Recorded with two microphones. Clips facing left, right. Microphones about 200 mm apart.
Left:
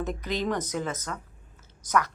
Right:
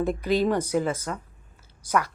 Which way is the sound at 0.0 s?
10° right (ahead or behind).